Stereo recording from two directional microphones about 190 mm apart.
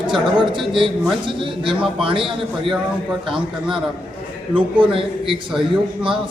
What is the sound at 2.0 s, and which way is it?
Speech, 25° right (ahead or behind).